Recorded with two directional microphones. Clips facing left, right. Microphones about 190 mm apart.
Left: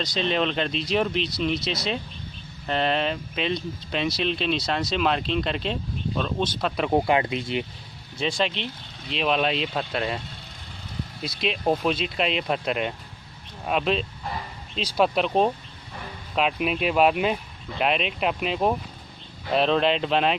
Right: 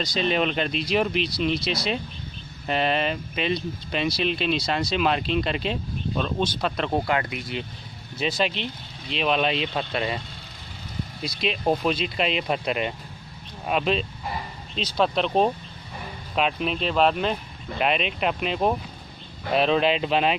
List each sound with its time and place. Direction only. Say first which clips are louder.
0.0 s speech: right 1 dB; 5° right (ahead or behind)
6.9 s speech: left 3 dB; 20° left (ahead or behind)
8.2 s speech: even; 5° right (ahead or behind)
11.2 s speech: even; centre (ahead or behind)